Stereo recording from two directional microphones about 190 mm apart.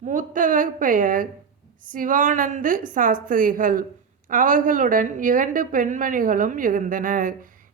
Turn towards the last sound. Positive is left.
turn(degrees=-45)  # may be behind; listen again after turning